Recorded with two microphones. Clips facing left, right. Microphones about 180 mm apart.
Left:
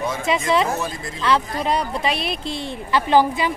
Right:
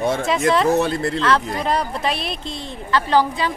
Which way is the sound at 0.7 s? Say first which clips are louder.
Right 8 dB; 65° right (ahead or behind).